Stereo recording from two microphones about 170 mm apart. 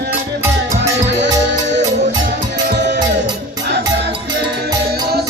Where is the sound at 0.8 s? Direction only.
90° right.